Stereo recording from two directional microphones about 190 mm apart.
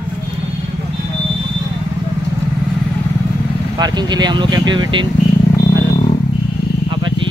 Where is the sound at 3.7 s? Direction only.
20° right (ahead or behind).